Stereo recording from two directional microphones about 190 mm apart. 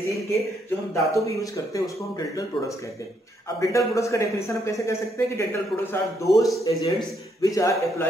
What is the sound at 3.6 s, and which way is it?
A man's voice, 15° left (ahead or behind).